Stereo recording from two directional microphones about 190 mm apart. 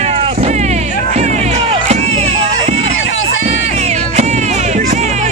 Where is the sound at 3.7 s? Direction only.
40° right (ahead or behind).